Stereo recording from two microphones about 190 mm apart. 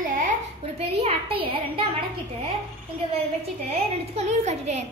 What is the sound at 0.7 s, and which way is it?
A woman's voice, 30° right (ahead or behind).